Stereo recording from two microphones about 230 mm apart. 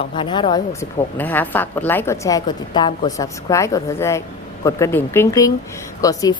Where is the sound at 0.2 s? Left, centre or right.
Left.